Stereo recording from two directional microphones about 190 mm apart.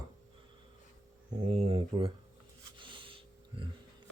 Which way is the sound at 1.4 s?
30° right (ahead or behind).